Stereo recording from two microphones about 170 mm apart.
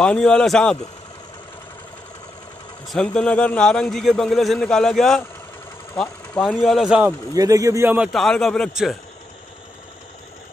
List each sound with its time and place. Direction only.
0.0 s a man's voice: 5° left (ahead or behind)
2.9 s a man's voice: 5° left (ahead or behind)
7.3 s speech: 20° right (ahead or behind)
8.1 s a man's voice: centre (ahead or behind)